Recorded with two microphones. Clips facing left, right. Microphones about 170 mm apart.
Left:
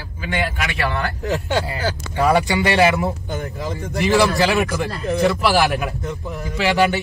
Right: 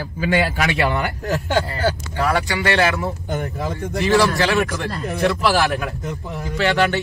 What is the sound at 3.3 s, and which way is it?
Speech, 55° right (ahead or behind).